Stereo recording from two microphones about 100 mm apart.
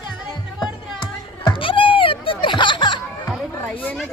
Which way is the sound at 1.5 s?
60° left (ahead or behind).